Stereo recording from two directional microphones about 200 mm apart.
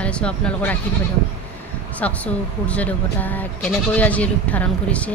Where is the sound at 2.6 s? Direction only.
5° left (ahead or behind).